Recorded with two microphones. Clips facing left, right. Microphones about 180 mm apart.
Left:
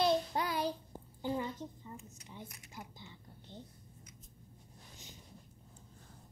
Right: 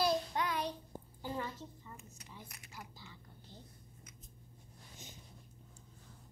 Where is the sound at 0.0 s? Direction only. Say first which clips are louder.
Left 2 dB; 30° left (ahead or behind).